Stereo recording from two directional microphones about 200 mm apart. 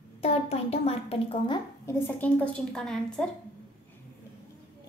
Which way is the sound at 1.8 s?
10° left (ahead or behind).